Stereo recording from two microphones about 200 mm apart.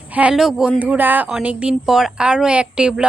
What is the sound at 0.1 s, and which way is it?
Speech, 5° right (ahead or behind).